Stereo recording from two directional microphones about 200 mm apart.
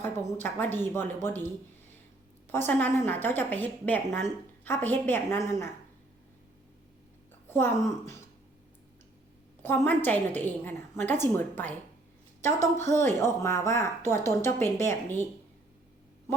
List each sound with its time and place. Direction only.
0.0 s a woman's voice: 10° left (ahead or behind)
2.5 s a woman's voice: 10° left (ahead or behind)
7.5 s a woman's voice: 10° left (ahead or behind)
9.6 s a woman's voice: 10° left (ahead or behind)